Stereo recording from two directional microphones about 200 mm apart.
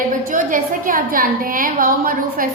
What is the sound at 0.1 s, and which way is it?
A woman's voice, 40° right (ahead or behind).